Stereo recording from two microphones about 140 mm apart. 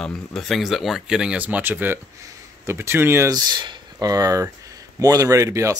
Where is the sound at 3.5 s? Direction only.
30° right (ahead or behind).